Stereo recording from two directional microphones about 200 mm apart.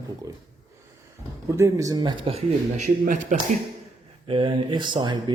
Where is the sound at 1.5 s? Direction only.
15° right (ahead or behind); by 3.4 s 40° right (ahead or behind).